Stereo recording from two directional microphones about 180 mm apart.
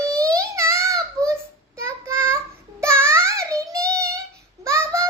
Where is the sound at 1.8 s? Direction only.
15° right (ahead or behind).